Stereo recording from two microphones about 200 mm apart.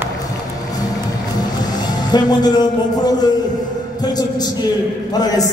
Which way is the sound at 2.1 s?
20° left (ahead or behind).